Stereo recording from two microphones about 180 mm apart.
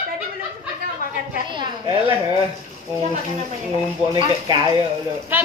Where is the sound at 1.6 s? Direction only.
25° right (ahead or behind).